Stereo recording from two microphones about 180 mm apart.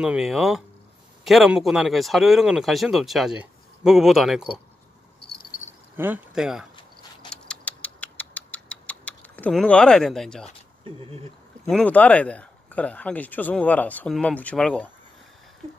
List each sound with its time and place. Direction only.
0.0 s speech: 5° right (ahead or behind)
5.9 s speech: 10° right (ahead or behind)
7.2 s a sound: 5° left (ahead or behind)
10.8 s speech: 30° right (ahead or behind)
11.7 s speech: 10° left (ahead or behind)